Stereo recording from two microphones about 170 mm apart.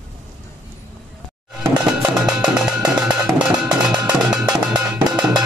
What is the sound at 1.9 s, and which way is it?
Music, 5° right (ahead or behind).